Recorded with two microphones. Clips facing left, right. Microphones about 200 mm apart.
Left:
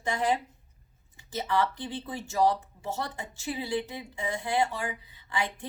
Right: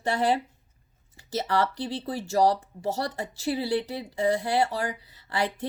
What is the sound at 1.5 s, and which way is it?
Speech, 40° right (ahead or behind).